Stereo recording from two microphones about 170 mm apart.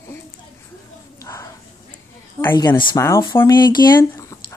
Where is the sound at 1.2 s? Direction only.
20° left (ahead or behind).